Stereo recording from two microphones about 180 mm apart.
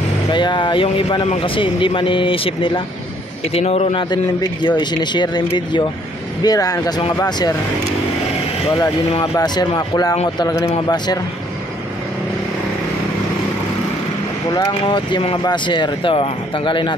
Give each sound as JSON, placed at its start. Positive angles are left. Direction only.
{"t": 0.3, "sound": "speech", "side_deg": 25}
{"t": 9.2, "sound": "speech", "side_deg": 20}
{"t": 14.5, "sound": "speech", "side_deg": 25}